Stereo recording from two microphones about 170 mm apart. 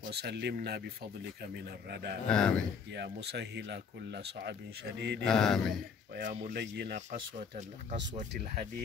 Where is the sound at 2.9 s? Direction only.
80° right.